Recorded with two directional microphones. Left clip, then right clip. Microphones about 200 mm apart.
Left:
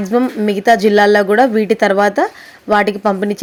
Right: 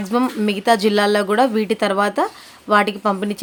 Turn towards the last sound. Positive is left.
turn(degrees=15)  # may be behind; listen again after turning